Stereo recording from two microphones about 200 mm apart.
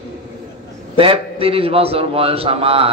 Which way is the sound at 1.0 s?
30° right (ahead or behind).